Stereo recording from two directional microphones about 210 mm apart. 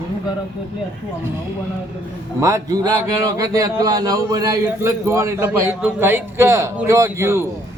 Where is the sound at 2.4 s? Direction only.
15° right (ahead or behind).